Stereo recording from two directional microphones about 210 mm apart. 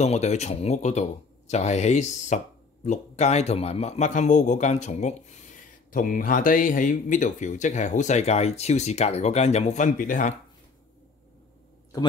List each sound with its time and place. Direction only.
0.0 s speech: 30° left (ahead or behind)